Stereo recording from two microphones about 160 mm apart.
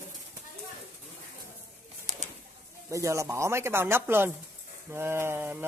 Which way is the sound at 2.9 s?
20° right (ahead or behind).